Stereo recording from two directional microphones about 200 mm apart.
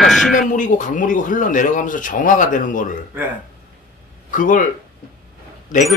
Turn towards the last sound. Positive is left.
turn(degrees=40)  # may be behind; listen again after turning